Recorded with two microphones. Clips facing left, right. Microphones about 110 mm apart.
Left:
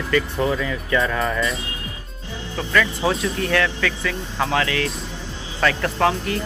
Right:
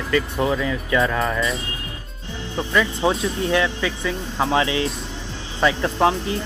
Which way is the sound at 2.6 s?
20° right (ahead or behind).